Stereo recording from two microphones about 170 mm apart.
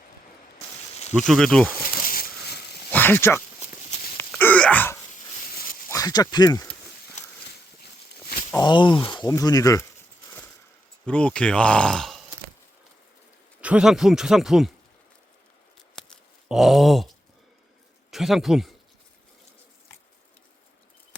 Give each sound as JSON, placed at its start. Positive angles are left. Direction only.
{"t": 1.1, "sound": "speech", "side_deg": 5}
{"t": 2.9, "sound": "speech", "side_deg": 10}
{"t": 4.2, "sound": "wail", "side_deg": 10}
{"t": 5.9, "sound": "speech", "side_deg": 20}
{"t": 8.6, "sound": "speech", "side_deg": 30}
{"t": 10.2, "sound": "a sound", "side_deg": 10}
{"t": 11.0, "sound": "speech", "side_deg": 5}
{"t": 13.6, "sound": "speech", "side_deg": -5}
{"t": 16.0, "sound": "a sound", "side_deg": 0}
{"t": 18.1, "sound": "speech", "side_deg": 0}